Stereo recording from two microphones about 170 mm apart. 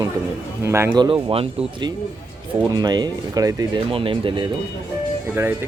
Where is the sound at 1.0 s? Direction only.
30° right (ahead or behind).